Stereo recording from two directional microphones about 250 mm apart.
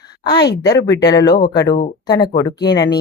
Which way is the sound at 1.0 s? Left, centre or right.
Centre.